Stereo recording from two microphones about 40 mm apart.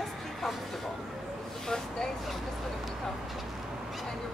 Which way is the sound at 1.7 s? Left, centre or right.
Centre.